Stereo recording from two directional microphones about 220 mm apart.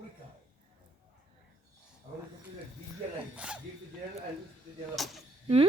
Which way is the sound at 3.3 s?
5° right (ahead or behind).